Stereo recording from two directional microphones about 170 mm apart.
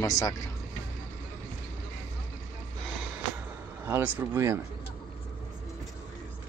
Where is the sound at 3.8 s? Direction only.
10° right (ahead or behind).